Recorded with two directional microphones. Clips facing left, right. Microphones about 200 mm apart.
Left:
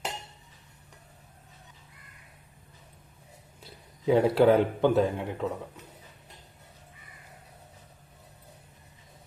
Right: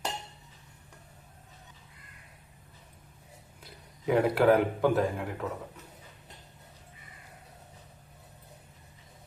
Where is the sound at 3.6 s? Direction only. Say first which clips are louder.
Left 4 dB; 25° left (ahead or behind).